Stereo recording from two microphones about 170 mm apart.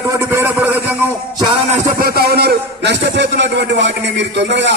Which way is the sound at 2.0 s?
65° right (ahead or behind).